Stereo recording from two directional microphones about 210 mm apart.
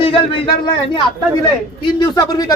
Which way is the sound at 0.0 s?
25° left (ahead or behind).